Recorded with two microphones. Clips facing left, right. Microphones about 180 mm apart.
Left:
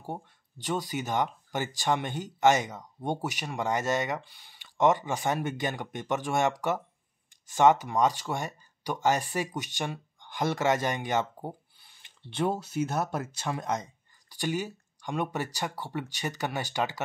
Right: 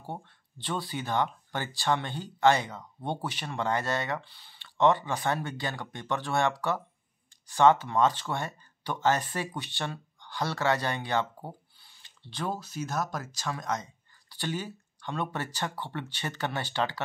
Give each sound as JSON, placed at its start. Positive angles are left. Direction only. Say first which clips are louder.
{"t": 0.7, "sound": "speech", "louder": "left 2 dB", "side_deg": 15}
{"t": 7.5, "sound": "speech", "louder": "even", "side_deg": 15}
{"t": 12.9, "sound": "speech", "louder": "left 2 dB", "side_deg": 25}